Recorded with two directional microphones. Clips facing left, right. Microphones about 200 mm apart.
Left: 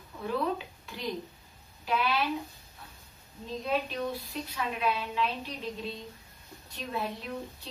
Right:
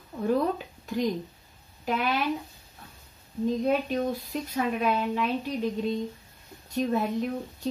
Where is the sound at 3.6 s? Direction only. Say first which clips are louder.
Right 2 dB; 45° right (ahead or behind).